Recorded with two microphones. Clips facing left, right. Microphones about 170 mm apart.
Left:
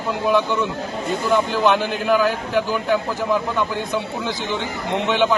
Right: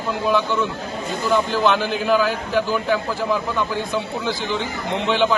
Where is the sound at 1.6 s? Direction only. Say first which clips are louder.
Left 1 dB; 15° left (ahead or behind).